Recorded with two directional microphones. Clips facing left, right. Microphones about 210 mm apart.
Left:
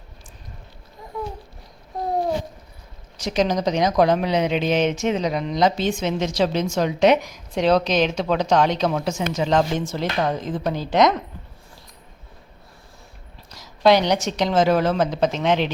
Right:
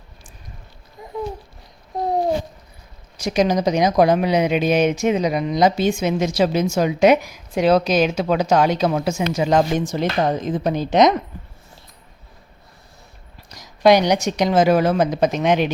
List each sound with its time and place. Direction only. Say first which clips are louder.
3.2 s speech: right 3 dB; 10° right (ahead or behind)
13.5 s speech: right 2 dB; 15° right (ahead or behind)